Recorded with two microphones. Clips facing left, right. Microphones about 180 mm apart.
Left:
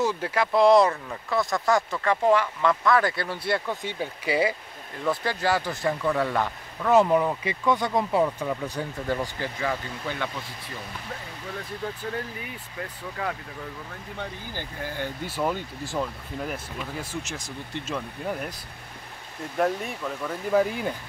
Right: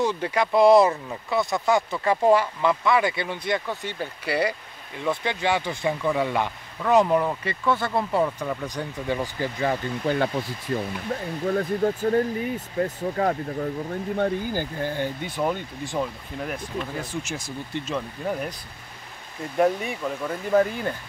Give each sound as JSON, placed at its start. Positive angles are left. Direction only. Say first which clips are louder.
{"t": 0.0, "sound": "speech", "louder": "right 2 dB", "side_deg": 5}
{"t": 7.6, "sound": "speech", "louder": "even", "side_deg": 15}
{"t": 9.6, "sound": "speech", "louder": "right 5 dB", "side_deg": -35}
{"t": 14.8, "sound": "speech", "louder": "right 2 dB", "side_deg": -25}
{"t": 15.2, "sound": "speech", "louder": "right 2 dB", "side_deg": 5}
{"t": 19.5, "sound": "speech", "louder": "right 4 dB", "side_deg": -5}